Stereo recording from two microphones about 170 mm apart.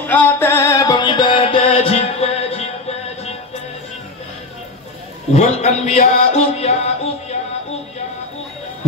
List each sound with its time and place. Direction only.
0.0 s music: 10° left (ahead or behind); by 2.7 s 40° left (ahead or behind)
5.3 s music: 40° left (ahead or behind)